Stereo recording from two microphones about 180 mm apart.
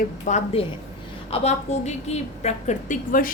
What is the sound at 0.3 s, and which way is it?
A woman's voice, 40° left (ahead or behind).